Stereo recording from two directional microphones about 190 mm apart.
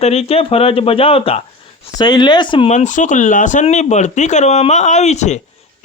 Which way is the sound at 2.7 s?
40° left (ahead or behind).